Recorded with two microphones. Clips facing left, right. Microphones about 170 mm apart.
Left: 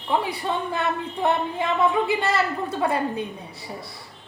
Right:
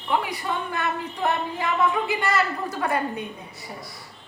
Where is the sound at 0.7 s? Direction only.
25° left (ahead or behind).